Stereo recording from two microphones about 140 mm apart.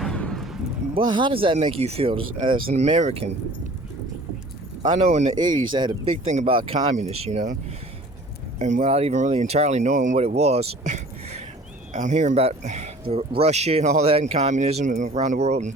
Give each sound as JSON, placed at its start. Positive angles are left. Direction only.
{"t": 0.0, "sound": "a sound", "side_deg": 5}
{"t": 0.9, "sound": "speech", "side_deg": -35}
{"t": 2.7, "sound": "speech", "side_deg": -50}
{"t": 4.9, "sound": "speech", "side_deg": -50}
{"t": 5.4, "sound": "speech", "side_deg": -30}
{"t": 6.2, "sound": "speech", "side_deg": -45}
{"t": 6.9, "sound": "speech", "side_deg": -55}
{"t": 8.5, "sound": "speech", "side_deg": -60}
{"t": 11.9, "sound": "speech", "side_deg": -60}